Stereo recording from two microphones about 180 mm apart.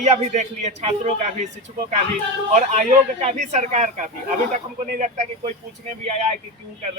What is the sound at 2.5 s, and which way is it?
Speech, 40° right (ahead or behind).